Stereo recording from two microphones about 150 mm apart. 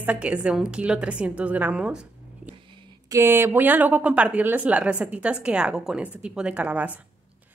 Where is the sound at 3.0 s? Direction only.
20° right (ahead or behind).